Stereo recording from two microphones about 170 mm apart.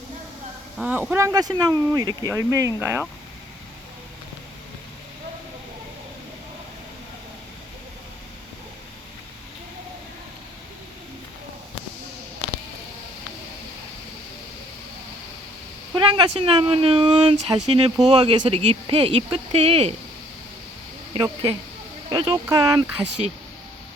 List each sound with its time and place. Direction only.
0.8 s speech: 5° right (ahead or behind)
16.0 s speech: 30° right (ahead or behind)
21.1 s speech: 25° right (ahead or behind)